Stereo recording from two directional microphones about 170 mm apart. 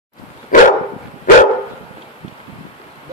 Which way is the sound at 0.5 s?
50° left (ahead or behind).